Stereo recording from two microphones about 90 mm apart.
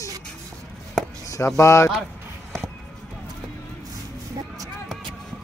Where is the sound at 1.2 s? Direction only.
40° left (ahead or behind).